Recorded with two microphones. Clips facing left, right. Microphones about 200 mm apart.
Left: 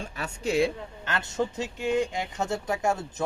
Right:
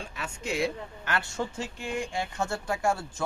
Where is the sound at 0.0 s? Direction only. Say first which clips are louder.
Left 5 dB; 35° left (ahead or behind).